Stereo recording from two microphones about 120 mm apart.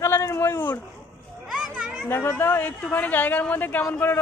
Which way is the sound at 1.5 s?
5° right (ahead or behind).